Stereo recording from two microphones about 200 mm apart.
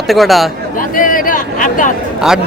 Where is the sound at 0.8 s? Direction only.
45° left (ahead or behind).